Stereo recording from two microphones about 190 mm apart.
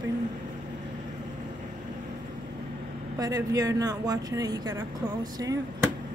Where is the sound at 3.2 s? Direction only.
20° right (ahead or behind).